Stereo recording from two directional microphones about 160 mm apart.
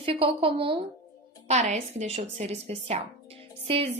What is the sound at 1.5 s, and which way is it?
A woman's voice, 45° right (ahead or behind).